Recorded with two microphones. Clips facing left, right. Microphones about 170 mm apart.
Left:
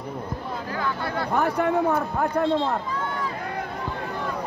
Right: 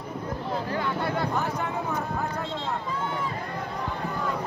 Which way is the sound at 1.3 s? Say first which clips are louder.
Left 7 dB; 60° left (ahead or behind).